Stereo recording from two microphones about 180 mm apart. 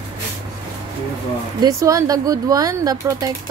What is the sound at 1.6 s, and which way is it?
Speech, 15° right (ahead or behind).